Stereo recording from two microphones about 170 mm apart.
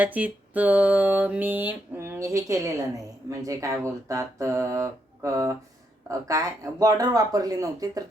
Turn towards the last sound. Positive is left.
turn(degrees=-20)  # may be behind; listen again after turning